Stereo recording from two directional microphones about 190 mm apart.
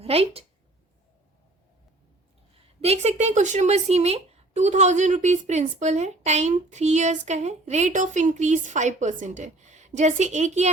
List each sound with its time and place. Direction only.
0.0 s speech: 30° right (ahead or behind)
2.8 s a woman's voice: 35° right (ahead or behind)